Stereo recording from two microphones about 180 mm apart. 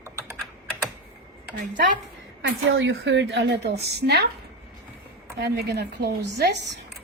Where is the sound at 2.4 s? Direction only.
90° right; by 4.3 s 70° right (ahead or behind).